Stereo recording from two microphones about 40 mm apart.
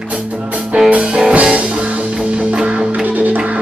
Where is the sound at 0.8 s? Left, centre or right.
Right.